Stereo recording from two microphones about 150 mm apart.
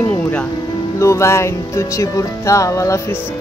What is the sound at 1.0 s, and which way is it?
Music, 20° left (ahead or behind).